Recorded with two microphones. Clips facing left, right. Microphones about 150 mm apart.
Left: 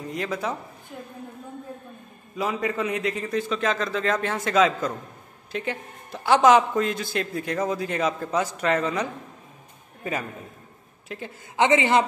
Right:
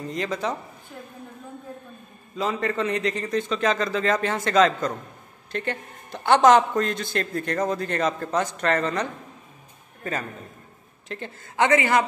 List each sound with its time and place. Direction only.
0.0 s a man's voice: 5° left (ahead or behind)
2.3 s a man's voice: 5° left (ahead or behind)
11.1 s a woman's voice: 5° left (ahead or behind)
11.5 s a man's voice: 20° left (ahead or behind)